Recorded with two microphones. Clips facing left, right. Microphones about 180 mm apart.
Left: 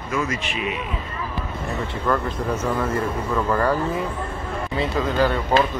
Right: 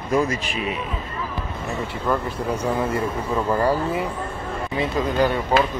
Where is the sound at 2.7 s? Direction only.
10° right (ahead or behind).